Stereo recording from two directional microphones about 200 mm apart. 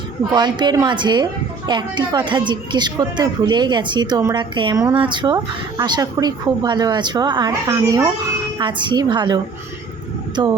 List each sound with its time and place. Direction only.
0.3 s a woman's voice: 20° right (ahead or behind)